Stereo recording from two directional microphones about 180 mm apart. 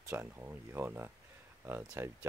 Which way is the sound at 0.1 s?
10° right (ahead or behind).